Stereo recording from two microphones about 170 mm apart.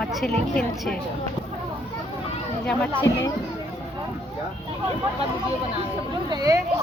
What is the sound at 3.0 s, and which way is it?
Speech, 20° left (ahead or behind).